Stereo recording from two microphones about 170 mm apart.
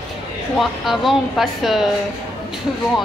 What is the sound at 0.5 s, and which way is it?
A woman's voice, centre (ahead or behind).